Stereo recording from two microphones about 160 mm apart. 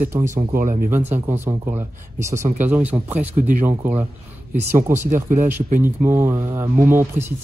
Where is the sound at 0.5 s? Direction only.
60° right (ahead or behind).